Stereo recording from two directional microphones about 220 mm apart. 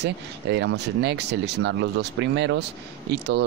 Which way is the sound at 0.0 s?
50° right (ahead or behind).